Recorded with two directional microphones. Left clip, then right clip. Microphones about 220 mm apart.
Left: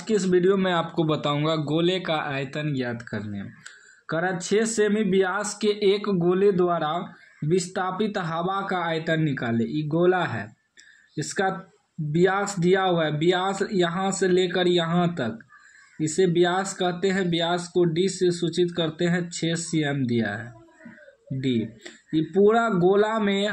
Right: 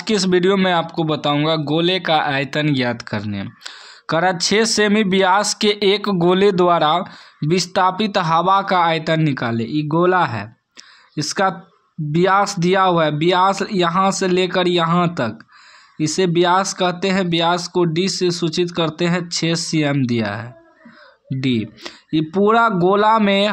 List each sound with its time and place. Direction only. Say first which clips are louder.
0.0 s speech: right 5 dB; 35° right (ahead or behind)
0.7 s speech: right 6 dB; 15° right (ahead or behind); by 23.5 s 40° right (ahead or behind)